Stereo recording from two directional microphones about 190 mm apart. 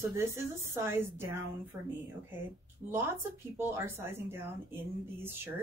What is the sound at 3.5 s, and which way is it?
Speech, 10° right (ahead or behind).